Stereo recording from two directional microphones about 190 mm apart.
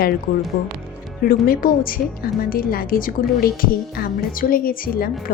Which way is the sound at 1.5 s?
50° left (ahead or behind).